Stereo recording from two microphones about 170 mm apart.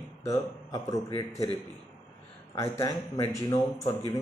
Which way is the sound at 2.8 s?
20° left (ahead or behind).